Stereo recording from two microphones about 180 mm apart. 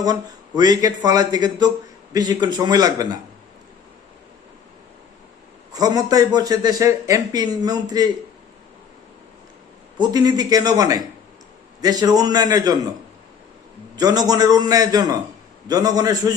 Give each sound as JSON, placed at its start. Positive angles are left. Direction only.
{"t": 0.0, "sound": "speech", "side_deg": -20}
{"t": 5.7, "sound": "speech", "side_deg": -20}
{"t": 10.0, "sound": "speech", "side_deg": -20}
{"t": 13.9, "sound": "speech", "side_deg": -20}